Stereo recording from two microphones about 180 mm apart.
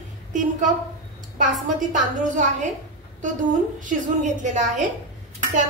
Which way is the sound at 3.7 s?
45° right (ahead or behind).